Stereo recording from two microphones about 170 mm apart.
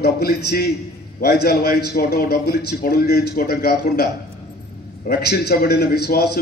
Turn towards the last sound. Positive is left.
turn(degrees=70)  # may be behind; listen again after turning